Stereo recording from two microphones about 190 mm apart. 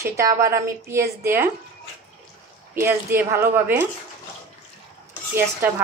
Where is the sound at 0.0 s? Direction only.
15° right (ahead or behind).